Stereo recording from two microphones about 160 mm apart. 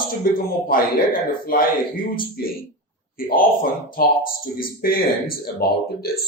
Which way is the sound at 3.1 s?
65° left (ahead or behind).